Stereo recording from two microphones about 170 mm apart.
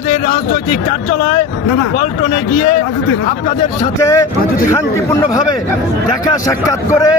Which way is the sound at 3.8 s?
20° left (ahead or behind).